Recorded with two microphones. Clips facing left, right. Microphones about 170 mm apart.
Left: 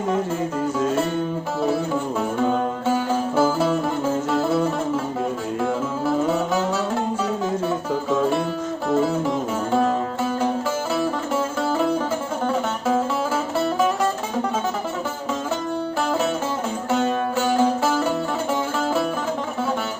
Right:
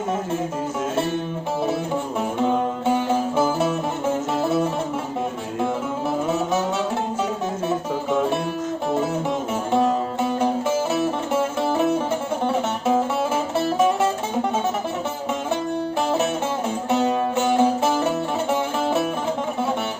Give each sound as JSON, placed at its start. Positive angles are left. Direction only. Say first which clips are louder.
{"t": 2.4, "sound": "music", "louder": "right 2 dB", "side_deg": -20}
{"t": 9.7, "sound": "music", "louder": "right 1 dB", "side_deg": -25}
{"t": 16.9, "sound": "music", "louder": "right 1 dB", "side_deg": -20}